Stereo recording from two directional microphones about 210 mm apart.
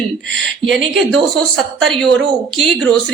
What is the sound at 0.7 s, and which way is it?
A woman's voice, centre (ahead or behind).